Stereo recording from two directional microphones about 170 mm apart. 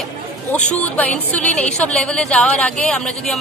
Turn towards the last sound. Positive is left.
turn(degrees=5)  # may be behind; listen again after turning